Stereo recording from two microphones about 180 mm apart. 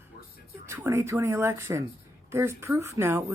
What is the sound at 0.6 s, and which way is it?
Speech, 15° right (ahead or behind).